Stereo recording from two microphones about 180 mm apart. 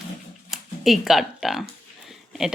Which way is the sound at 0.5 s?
Centre (ahead or behind).